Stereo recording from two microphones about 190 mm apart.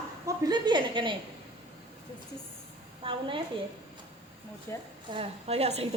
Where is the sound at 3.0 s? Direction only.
25° right (ahead or behind).